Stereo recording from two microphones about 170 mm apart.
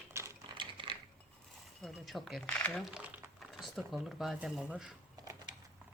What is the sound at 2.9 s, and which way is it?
Speech, 5° right (ahead or behind).